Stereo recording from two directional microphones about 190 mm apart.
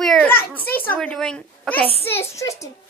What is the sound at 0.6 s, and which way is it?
Speech, 50° left (ahead or behind).